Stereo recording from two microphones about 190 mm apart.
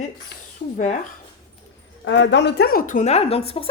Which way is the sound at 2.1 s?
70° left (ahead or behind).